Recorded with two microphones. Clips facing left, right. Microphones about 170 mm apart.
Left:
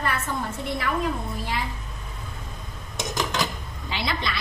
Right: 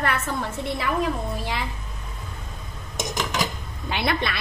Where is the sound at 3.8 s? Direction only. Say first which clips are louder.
Right 4 dB; 55° right (ahead or behind).